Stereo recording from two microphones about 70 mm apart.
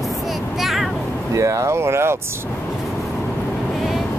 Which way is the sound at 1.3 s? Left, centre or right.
Right.